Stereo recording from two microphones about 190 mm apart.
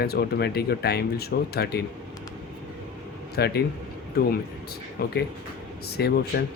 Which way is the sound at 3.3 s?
55° left (ahead or behind).